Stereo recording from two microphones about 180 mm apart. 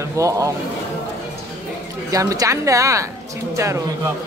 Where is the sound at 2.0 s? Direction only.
20° right (ahead or behind).